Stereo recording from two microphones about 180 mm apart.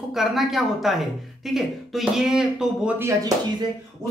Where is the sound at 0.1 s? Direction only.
Centre (ahead or behind).